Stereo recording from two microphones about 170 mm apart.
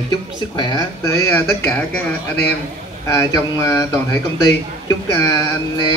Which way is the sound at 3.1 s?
20° left (ahead or behind).